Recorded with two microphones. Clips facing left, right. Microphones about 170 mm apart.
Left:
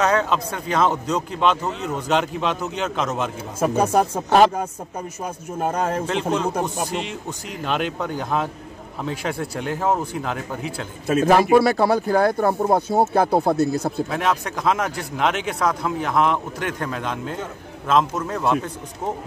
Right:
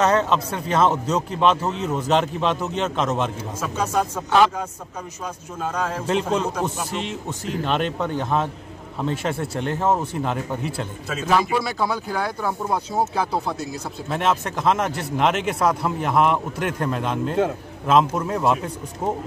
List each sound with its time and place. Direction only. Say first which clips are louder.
0.0 s a man's voice: right 1 dB; centre (ahead or behind)
3.6 s speech: left 5 dB; 60° left (ahead or behind)
6.0 s a man's voice: even; 5° right (ahead or behind)
11.1 s speech: left 6 dB; 60° left (ahead or behind)
14.1 s a man's voice: even; centre (ahead or behind)